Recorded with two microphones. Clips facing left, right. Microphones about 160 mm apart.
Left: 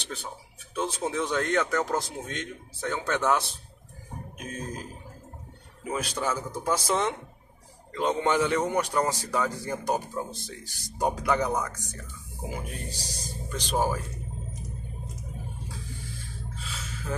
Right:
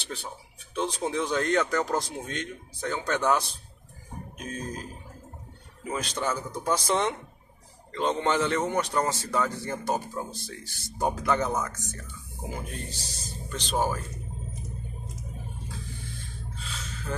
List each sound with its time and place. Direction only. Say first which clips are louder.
0.7 s a man's voice: right 1 dB; 5° left (ahead or behind)
4.5 s speech: right 1 dB; 10° left (ahead or behind)
5.9 s speech: even; 10° left (ahead or behind)
16.2 s gasp: left 1 dB; 10° left (ahead or behind)